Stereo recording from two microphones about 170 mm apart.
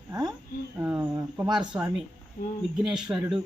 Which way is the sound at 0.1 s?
25° right (ahead or behind).